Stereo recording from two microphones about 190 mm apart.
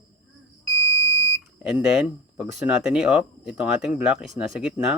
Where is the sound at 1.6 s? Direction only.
5° right (ahead or behind).